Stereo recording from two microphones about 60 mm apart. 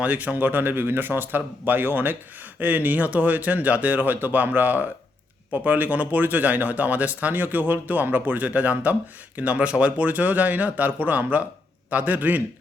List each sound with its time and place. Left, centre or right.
0.0 s a man's voice: right